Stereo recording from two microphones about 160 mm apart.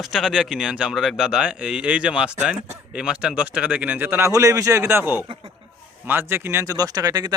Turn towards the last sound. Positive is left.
turn(degrees=-25)  # may be behind; listen again after turning